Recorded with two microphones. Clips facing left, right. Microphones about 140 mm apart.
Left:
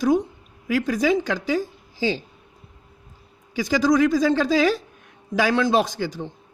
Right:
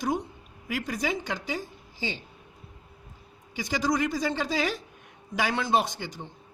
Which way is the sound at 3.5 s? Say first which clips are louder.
Left 8 dB; 90° left.